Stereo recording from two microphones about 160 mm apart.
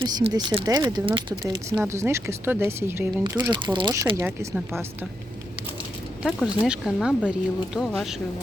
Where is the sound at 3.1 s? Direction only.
25° right (ahead or behind).